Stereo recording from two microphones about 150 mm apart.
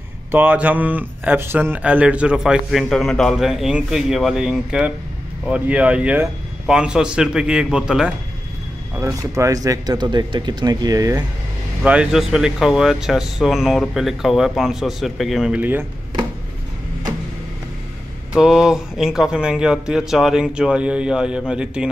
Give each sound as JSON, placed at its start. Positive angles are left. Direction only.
{"t": 0.3, "sound": "speech", "side_deg": -10}
{"t": 8.9, "sound": "speech", "side_deg": -20}
{"t": 11.8, "sound": "speech", "side_deg": -10}
{"t": 18.3, "sound": "speech", "side_deg": -5}